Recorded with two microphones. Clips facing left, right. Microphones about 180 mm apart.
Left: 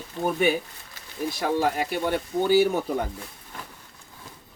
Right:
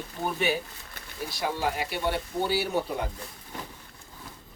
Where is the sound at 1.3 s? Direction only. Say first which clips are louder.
Left 5 dB; 50° left (ahead or behind).